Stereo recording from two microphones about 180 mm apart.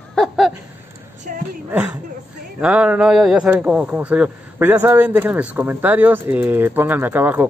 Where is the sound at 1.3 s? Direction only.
45° right (ahead or behind).